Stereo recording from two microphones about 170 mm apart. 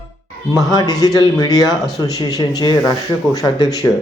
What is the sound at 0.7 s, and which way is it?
Speech, 25° left (ahead or behind).